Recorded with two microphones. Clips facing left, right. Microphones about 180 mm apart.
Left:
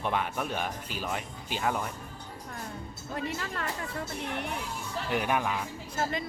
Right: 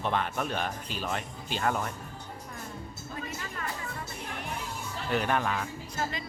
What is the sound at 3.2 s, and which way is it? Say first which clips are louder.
Music: left 5 dB; 70° left (ahead or behind).